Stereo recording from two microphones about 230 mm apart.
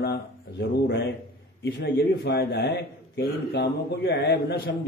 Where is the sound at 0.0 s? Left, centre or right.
Left.